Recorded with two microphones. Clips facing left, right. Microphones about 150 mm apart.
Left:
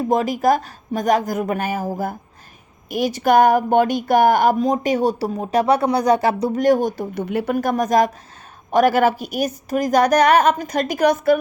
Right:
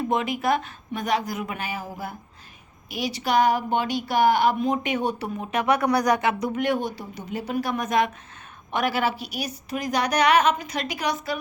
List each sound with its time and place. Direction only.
0.0 s speech: 40° left (ahead or behind)